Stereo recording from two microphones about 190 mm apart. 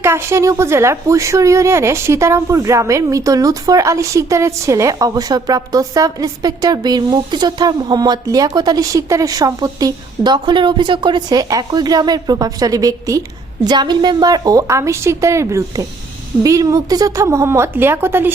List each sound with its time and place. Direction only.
0.0 s a woman's voice: 15° right (ahead or behind)